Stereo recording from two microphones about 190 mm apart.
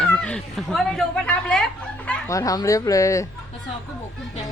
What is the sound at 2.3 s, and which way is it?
Speech, 15° left (ahead or behind).